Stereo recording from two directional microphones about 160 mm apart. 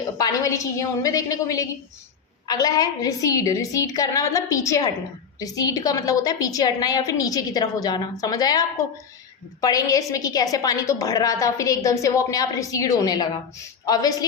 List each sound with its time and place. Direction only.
0.2 s a woman's voice: 20° left (ahead or behind)